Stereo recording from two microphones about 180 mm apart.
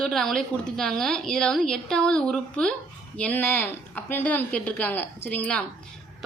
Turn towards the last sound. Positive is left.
turn(degrees=10)  # may be behind; listen again after turning